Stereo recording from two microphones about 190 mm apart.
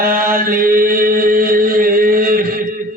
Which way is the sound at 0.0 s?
50° right (ahead or behind).